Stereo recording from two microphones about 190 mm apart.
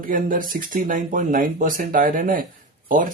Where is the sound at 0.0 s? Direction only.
45° right (ahead or behind).